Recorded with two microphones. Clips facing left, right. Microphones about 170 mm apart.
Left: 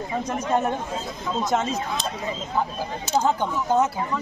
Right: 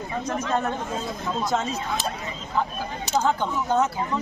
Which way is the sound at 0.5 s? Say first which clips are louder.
Left 5 dB; 15° left (ahead or behind).